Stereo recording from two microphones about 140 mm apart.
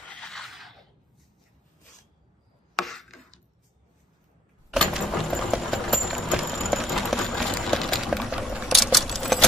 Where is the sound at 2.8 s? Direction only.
Centre (ahead or behind).